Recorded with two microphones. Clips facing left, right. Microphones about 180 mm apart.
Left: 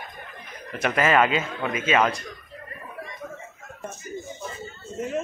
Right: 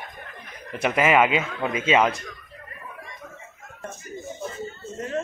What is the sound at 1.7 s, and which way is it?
Speech, 30° right (ahead or behind).